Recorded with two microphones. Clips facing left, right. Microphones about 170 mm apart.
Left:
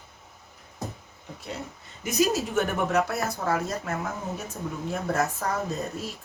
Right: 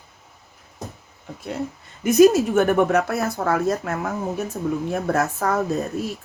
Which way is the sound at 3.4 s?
60° right (ahead or behind).